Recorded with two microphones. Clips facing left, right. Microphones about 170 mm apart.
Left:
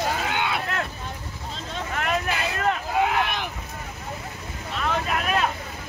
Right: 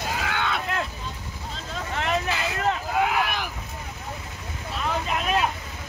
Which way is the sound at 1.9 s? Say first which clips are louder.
Even; 20° right (ahead or behind).